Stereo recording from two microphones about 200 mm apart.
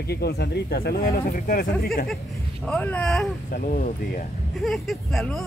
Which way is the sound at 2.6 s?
5° left (ahead or behind).